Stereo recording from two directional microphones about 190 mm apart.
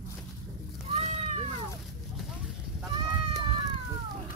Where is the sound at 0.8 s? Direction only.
35° right (ahead or behind).